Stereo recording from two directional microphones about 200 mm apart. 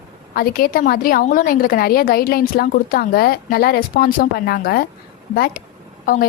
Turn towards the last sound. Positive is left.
turn(degrees=45)  # may be behind; listen again after turning